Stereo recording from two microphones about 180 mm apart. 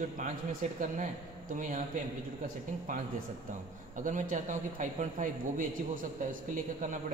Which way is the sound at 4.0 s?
45° right (ahead or behind).